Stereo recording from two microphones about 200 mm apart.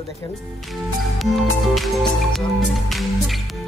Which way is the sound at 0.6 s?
Centre (ahead or behind).